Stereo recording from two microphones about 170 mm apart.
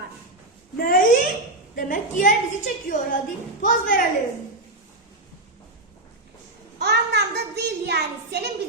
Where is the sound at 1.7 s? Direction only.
55° left (ahead or behind).